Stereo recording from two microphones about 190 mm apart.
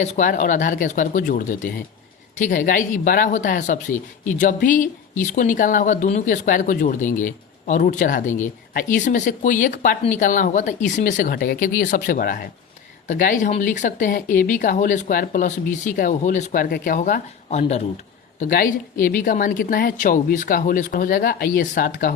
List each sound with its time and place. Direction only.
0.0 s speech: 40° left (ahead or behind)
18.5 s speech: 50° left (ahead or behind)